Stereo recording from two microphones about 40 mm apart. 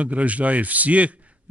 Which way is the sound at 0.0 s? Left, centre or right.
Right.